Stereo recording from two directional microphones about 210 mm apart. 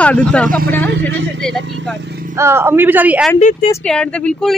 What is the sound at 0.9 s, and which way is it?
Speech, 55° right (ahead or behind).